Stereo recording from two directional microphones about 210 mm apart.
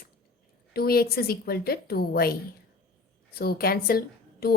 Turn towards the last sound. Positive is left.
turn(degrees=45)  # may be behind; listen again after turning